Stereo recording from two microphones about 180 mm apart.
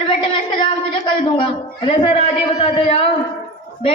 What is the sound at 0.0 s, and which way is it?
Speech, 30° left (ahead or behind).